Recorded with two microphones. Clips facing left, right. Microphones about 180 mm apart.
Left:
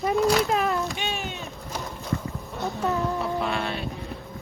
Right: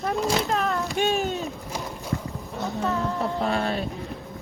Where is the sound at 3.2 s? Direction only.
40° right (ahead or behind).